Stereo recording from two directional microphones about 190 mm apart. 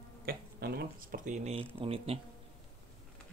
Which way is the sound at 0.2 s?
55° right (ahead or behind).